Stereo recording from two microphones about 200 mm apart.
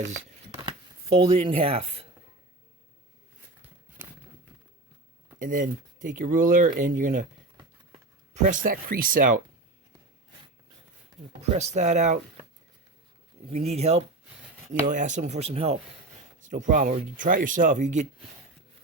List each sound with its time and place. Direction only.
1.2 s speech: 25° right (ahead or behind)
5.4 s speech: 40° right (ahead or behind)
7.5 s a sound: 30° right (ahead or behind)
11.5 s speech: 35° right (ahead or behind)
13.5 s speech: 30° right (ahead or behind)